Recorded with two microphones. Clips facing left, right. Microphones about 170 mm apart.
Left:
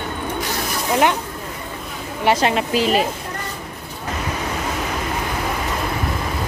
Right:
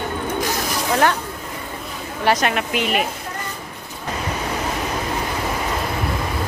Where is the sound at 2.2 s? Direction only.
25° left (ahead or behind).